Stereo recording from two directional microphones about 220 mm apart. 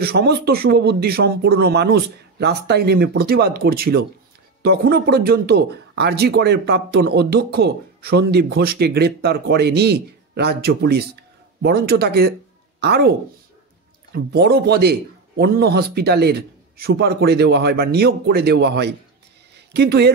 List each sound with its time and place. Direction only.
0.0 s speech: 45° right (ahead or behind)
14.1 s speech: 45° right (ahead or behind)